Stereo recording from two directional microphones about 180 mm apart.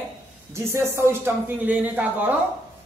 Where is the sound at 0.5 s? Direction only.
15° right (ahead or behind).